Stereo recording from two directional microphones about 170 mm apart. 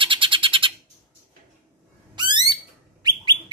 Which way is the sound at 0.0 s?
30° right (ahead or behind).